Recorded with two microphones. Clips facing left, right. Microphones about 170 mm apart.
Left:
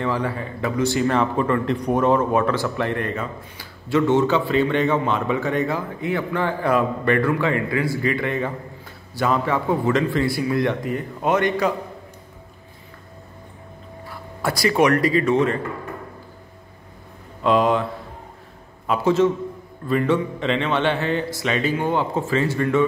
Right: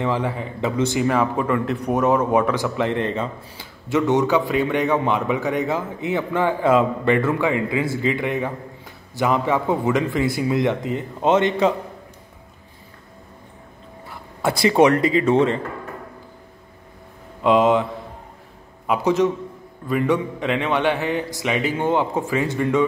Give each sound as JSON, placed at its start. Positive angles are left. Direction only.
{"t": 0.0, "sound": "a man's voice", "side_deg": -20}
{"t": 1.0, "sound": "a man's voice", "side_deg": -5}
{"t": 14.4, "sound": "a man's voice", "side_deg": -25}
{"t": 17.4, "sound": "a man's voice", "side_deg": -20}
{"t": 18.9, "sound": "a man's voice", "side_deg": -15}